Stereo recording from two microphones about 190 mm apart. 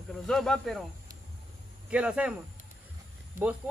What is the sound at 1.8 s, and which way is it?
Speech, 5° right (ahead or behind).